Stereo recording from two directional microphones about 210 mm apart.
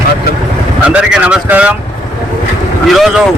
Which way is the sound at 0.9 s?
5° right (ahead or behind).